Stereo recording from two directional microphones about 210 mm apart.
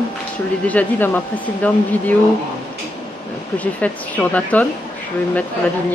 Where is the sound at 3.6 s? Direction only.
5° left (ahead or behind).